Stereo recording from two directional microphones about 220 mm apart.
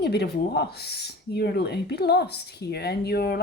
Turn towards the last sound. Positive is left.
turn(degrees=45)  # may be behind; listen again after turning